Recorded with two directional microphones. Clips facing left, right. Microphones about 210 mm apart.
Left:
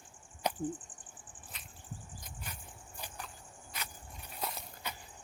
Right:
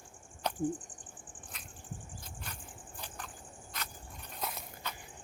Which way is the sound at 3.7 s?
10° left (ahead or behind).